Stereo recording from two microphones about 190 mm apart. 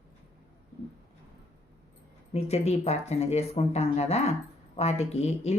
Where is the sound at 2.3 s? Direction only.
35° left (ahead or behind).